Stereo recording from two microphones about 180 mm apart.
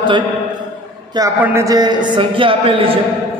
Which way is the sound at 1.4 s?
15° right (ahead or behind).